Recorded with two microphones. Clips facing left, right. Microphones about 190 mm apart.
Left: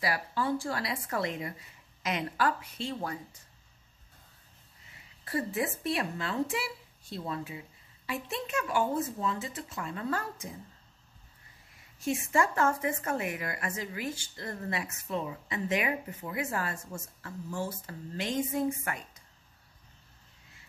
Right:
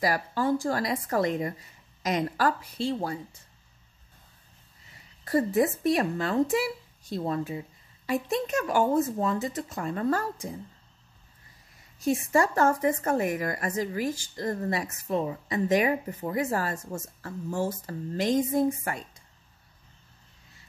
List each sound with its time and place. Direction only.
0.0 s speech: 40° right (ahead or behind)
5.2 s speech: 40° right (ahead or behind)
12.0 s speech: 35° right (ahead or behind)